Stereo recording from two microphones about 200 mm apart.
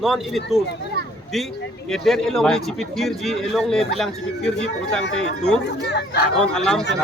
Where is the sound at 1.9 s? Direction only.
Centre (ahead or behind).